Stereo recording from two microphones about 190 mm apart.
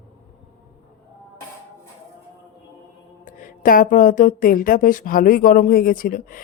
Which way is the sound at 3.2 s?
45° left (ahead or behind).